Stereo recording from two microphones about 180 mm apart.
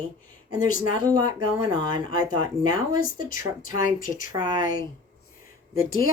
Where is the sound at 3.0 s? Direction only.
50° left (ahead or behind).